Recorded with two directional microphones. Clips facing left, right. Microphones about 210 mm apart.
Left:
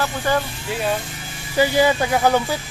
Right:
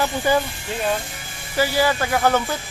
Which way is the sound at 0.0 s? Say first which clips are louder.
Right 2 dB; 10° right (ahead or behind).